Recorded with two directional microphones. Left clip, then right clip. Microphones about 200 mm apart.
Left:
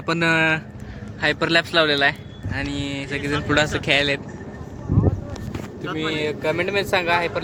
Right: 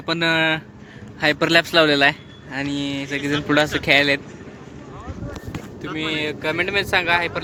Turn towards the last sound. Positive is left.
turn(degrees=0)  # may be behind; listen again after turning